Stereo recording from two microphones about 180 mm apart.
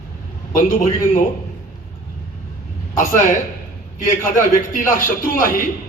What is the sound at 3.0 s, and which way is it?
Speech, 45° left (ahead or behind).